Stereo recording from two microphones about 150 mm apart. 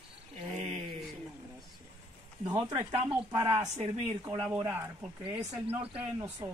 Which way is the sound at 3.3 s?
30° right (ahead or behind).